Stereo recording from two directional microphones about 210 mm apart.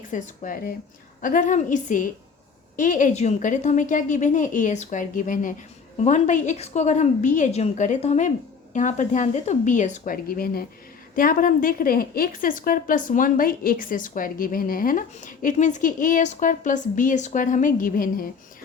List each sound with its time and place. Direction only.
0.1 s a woman's voice: 40° left (ahead or behind)